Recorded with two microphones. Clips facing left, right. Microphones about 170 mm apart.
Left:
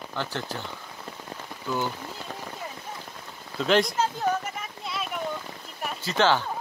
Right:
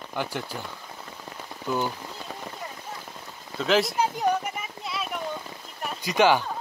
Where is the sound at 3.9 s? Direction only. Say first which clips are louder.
Right 2 dB; 15° right (ahead or behind).